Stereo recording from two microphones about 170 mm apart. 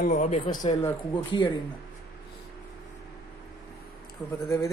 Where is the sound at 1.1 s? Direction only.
30° left (ahead or behind).